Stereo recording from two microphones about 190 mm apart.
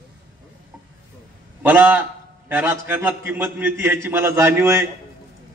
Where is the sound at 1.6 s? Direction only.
10° right (ahead or behind).